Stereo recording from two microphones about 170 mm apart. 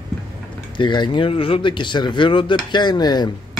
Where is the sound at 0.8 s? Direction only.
25° left (ahead or behind).